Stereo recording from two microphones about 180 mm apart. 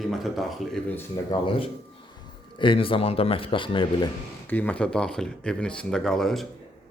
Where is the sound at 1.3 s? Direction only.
30° left (ahead or behind).